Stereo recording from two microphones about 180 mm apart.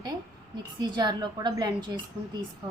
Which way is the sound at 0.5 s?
25° right (ahead or behind).